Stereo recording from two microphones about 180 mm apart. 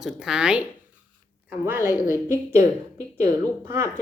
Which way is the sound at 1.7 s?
15° right (ahead or behind).